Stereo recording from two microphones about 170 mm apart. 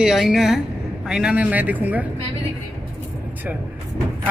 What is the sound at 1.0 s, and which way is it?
A man's voice, 5° right (ahead or behind).